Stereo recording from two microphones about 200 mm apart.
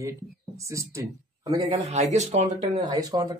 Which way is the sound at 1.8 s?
35° right (ahead or behind).